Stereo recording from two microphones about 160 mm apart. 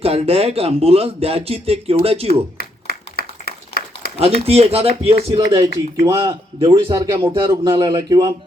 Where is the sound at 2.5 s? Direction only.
75° left (ahead or behind).